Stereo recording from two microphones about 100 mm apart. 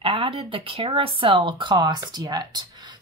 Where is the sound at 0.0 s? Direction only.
65° right (ahead or behind).